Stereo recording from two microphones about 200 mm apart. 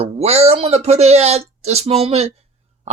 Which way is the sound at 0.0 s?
30° right (ahead or behind).